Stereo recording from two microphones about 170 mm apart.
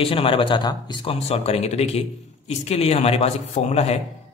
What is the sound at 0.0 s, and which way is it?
Speech, 30° left (ahead or behind).